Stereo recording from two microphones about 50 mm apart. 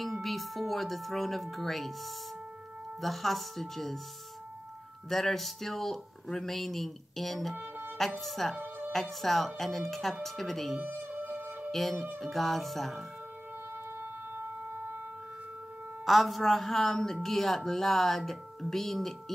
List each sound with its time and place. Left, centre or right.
0.0 s music: centre
3.0 s a woman's voice: centre
5.1 s a woman's voice: centre
8.5 s music: right
9.2 s a woman's voice: centre
10.8 s music: right
11.7 s a woman's voice: centre
16.1 s a woman's voice: centre